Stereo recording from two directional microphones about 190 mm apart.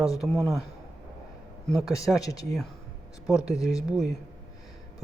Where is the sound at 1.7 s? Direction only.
Centre (ahead or behind).